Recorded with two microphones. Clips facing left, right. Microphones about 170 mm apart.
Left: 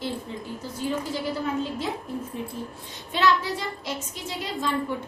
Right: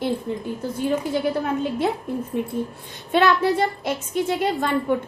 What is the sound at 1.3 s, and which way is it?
A woman's voice, 60° right (ahead or behind).